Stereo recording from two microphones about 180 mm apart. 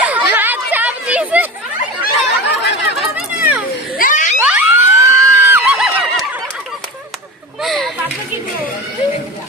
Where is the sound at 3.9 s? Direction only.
45° left (ahead or behind).